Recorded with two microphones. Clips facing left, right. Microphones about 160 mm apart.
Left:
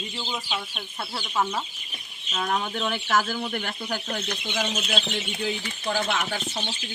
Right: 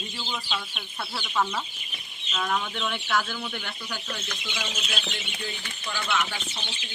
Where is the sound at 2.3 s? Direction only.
40° left (ahead or behind).